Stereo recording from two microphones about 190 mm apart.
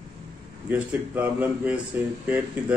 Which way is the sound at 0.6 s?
10° right (ahead or behind).